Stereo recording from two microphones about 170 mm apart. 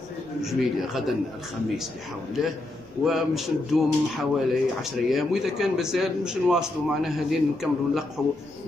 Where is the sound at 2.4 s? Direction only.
Centre (ahead or behind).